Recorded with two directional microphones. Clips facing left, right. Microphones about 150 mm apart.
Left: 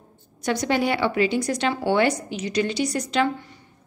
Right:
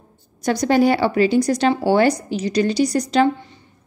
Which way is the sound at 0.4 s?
40° right (ahead or behind).